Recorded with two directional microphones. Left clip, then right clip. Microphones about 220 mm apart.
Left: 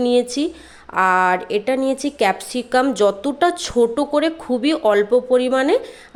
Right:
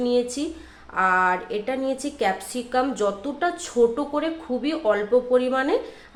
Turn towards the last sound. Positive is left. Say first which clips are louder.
# left 5 dB
turn(degrees=40)  # may be behind; listen again after turning